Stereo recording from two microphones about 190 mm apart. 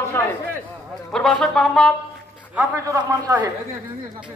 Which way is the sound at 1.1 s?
Centre (ahead or behind).